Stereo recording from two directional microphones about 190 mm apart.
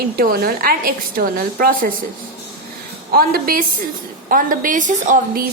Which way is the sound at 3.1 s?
50° right (ahead or behind).